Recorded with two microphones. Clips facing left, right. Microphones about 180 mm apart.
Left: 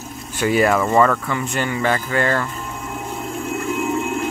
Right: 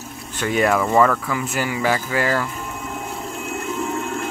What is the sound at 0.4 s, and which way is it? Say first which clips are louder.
Speech: left 2 dB; 5° left (ahead or behind).